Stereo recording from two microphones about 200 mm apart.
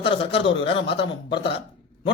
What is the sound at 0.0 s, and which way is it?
Speech, 30° left (ahead or behind).